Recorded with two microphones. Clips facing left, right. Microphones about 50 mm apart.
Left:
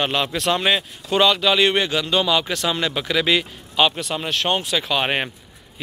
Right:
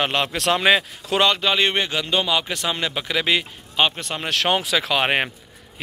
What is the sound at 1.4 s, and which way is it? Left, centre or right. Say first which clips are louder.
Speech: left 3 dB; right.